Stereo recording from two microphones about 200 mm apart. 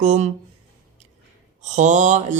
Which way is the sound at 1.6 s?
35° right (ahead or behind).